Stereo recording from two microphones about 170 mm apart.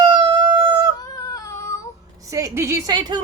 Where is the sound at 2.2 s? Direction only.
20° right (ahead or behind).